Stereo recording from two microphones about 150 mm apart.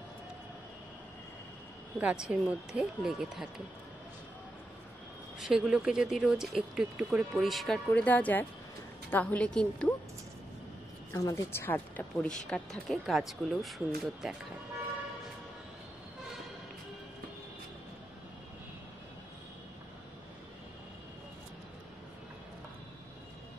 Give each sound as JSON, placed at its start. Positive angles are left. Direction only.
{"t": 2.0, "sound": "speech", "side_deg": -5}
{"t": 5.4, "sound": "speech", "side_deg": -5}
{"t": 11.1, "sound": "speech", "side_deg": 20}